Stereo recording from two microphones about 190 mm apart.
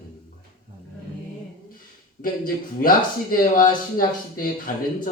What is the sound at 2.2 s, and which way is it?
Speech, 50° left (ahead or behind).